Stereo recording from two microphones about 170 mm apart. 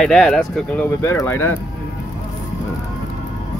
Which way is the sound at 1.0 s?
15° left (ahead or behind).